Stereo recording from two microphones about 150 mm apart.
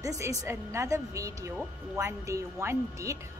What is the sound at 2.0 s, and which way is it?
A woman's voice, 20° right (ahead or behind).